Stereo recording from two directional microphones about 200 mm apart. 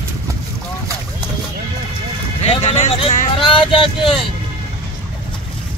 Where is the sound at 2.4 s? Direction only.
35° left (ahead or behind).